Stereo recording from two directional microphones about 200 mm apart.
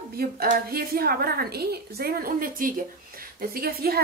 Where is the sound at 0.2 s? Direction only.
50° right (ahead or behind).